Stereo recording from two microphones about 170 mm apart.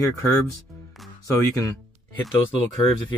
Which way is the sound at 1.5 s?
15° left (ahead or behind).